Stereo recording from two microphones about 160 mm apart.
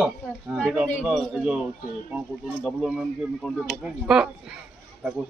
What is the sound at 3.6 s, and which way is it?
Speech, 5° right (ahead or behind).